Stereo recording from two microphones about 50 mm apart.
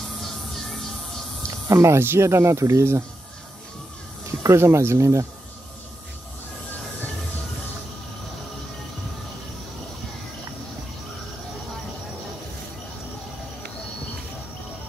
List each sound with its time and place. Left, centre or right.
1.7 s speech: right
2.0 s speech: right
4.5 s speech: right